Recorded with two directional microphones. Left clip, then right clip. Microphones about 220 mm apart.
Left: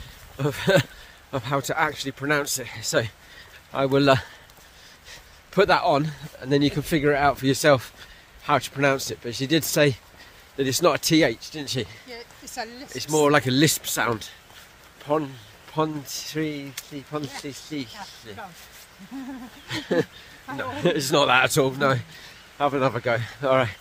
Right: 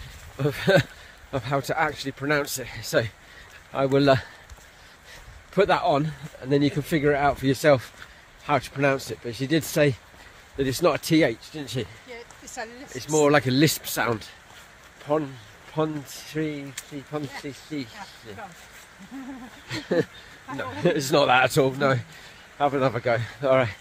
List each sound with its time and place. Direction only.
0.4 s speech: centre (ahead or behind)
5.5 s speech: 10° left (ahead or behind)
12.1 s speech: 30° left (ahead or behind)
12.9 s speech: 5° left (ahead or behind)
19.7 s speech: centre (ahead or behind)